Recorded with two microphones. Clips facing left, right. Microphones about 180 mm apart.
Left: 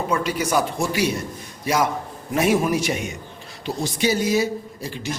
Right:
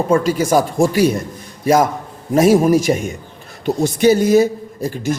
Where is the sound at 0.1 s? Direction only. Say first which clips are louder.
Right 8 dB; 45° right (ahead or behind).